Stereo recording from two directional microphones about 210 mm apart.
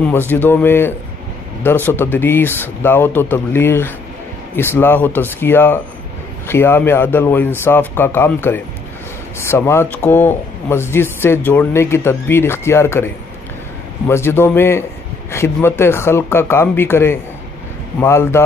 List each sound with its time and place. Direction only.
0.1 s speech: 10° left (ahead or behind)